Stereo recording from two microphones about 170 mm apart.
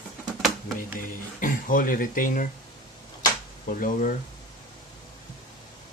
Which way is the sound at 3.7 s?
50° left (ahead or behind).